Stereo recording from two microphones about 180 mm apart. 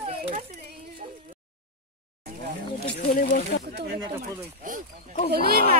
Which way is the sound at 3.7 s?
65° right (ahead or behind).